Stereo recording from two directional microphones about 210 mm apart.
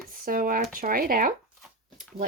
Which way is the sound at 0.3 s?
40° right (ahead or behind).